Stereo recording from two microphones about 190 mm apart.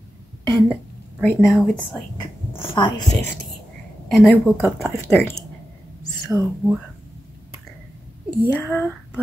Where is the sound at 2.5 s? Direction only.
25° left (ahead or behind).